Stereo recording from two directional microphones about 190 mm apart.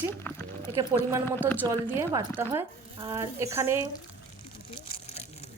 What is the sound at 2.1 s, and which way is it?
A woman's voice, 15° right (ahead or behind).